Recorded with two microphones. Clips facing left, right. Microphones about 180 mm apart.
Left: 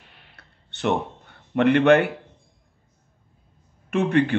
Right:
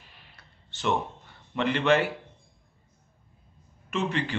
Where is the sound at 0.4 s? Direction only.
65° left (ahead or behind).